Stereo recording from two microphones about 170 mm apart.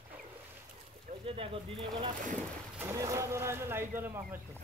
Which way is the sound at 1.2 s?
35° right (ahead or behind).